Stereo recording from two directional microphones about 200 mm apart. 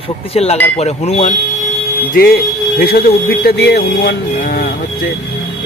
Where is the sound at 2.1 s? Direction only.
50° left (ahead or behind).